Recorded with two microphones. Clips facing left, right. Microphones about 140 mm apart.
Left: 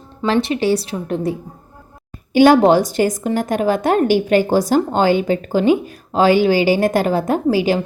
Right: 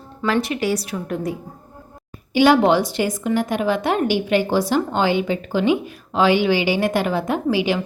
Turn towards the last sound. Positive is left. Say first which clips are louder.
# left 4 dB
turn(degrees=40)  # may be behind; listen again after turning